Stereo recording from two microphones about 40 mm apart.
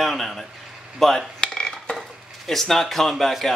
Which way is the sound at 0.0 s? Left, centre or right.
Centre.